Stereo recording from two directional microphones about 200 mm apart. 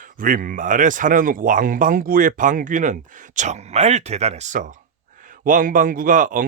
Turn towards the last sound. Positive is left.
turn(degrees=-40)  # may be behind; listen again after turning